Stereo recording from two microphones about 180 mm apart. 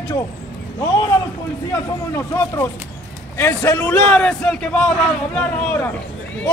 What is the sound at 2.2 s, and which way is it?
A man's voice, 15° left (ahead or behind).